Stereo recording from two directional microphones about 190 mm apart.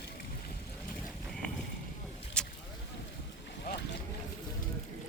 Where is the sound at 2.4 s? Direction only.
5° left (ahead or behind).